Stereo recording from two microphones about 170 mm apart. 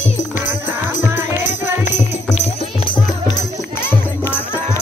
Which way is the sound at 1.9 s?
45° left (ahead or behind).